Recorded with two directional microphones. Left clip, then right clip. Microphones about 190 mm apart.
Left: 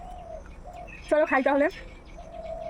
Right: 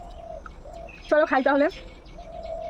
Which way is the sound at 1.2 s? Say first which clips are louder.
Right 1 dB; 5° left (ahead or behind).